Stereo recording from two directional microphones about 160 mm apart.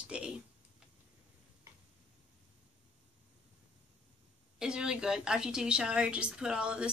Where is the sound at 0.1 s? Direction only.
5° right (ahead or behind).